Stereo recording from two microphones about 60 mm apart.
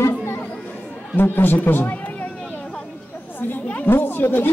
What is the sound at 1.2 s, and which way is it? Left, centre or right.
Speech, left.